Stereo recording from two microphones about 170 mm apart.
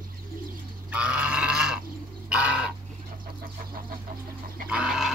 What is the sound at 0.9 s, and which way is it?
Livestock, 5° right (ahead or behind).